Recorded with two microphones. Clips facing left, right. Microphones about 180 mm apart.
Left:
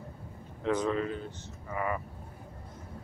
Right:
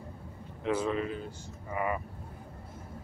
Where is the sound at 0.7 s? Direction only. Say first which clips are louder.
Left 1 dB; 10° right (ahead or behind).